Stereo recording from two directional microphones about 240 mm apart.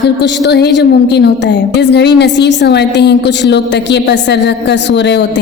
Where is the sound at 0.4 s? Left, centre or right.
Left.